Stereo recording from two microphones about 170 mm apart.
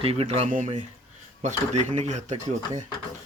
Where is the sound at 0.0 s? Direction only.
35° right (ahead or behind).